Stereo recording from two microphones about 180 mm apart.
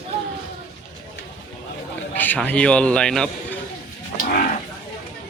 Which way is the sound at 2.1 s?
10° left (ahead or behind).